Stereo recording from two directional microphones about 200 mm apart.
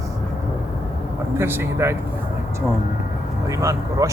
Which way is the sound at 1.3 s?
10° right (ahead or behind).